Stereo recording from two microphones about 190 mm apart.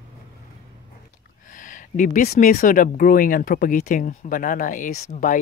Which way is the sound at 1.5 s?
45° left (ahead or behind).